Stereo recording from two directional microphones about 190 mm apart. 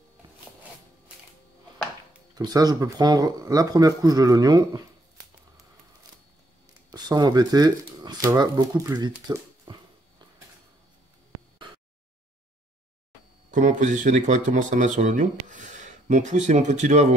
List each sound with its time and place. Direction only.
2.3 s speech: 20° right (ahead or behind)
6.9 s speech: 20° right (ahead or behind)
13.5 s speech: 40° right (ahead or behind)